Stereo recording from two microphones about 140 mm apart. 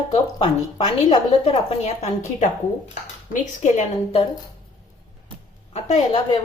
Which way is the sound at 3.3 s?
60° left (ahead or behind).